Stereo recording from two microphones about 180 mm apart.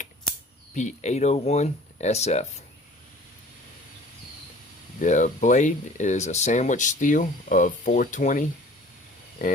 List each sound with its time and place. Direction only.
0.7 s speech: 40° left (ahead or behind)
4.9 s speech: 45° left (ahead or behind)